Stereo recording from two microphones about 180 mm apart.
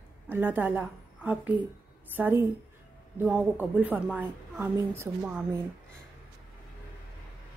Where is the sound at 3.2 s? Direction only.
5° right (ahead or behind).